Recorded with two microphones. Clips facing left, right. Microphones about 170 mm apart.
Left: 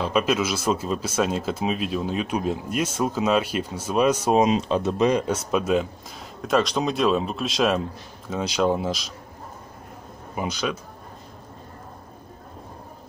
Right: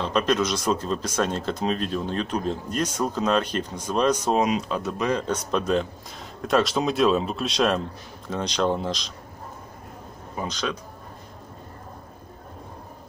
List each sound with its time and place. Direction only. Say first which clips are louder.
0.0 s speech: even; 5° left (ahead or behind)
4.4 s speech: left 3 dB; 25° left (ahead or behind); by 9.1 s 5° left (ahead or behind)
10.3 s speech: left 2 dB; 10° left (ahead or behind)